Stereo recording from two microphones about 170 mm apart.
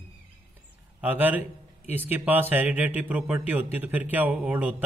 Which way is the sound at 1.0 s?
10° right (ahead or behind).